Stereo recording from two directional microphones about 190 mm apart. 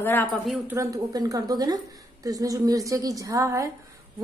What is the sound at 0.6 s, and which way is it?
A woman's voice, 15° right (ahead or behind).